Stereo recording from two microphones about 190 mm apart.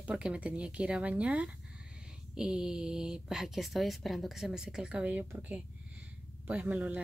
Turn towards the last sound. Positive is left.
turn(degrees=-10)  # may be behind; listen again after turning